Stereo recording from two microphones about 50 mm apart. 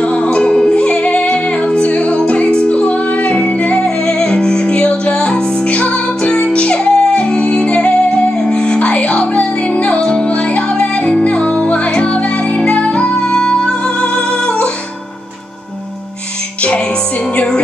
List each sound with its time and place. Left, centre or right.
0.0 s music: centre